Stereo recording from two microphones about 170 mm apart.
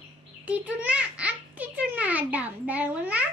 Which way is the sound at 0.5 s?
10° right (ahead or behind).